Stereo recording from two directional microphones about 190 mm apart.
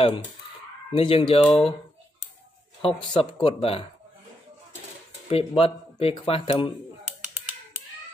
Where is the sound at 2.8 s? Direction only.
30° left (ahead or behind).